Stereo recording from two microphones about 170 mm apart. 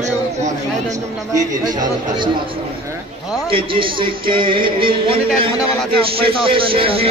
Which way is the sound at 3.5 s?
30° right (ahead or behind).